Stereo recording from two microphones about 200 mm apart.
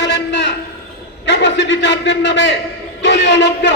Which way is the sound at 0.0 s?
60° left (ahead or behind).